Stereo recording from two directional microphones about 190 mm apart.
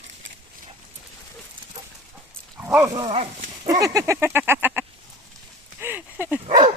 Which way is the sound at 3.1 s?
40° right (ahead or behind).